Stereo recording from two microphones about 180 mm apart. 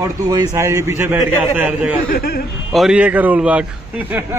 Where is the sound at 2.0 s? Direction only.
55° left (ahead or behind).